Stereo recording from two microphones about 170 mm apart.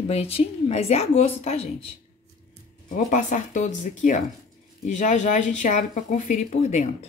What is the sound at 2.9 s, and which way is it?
A woman's voice, 45° left (ahead or behind).